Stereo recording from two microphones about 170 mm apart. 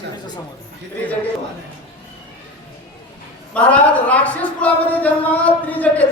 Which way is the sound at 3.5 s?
10° left (ahead or behind).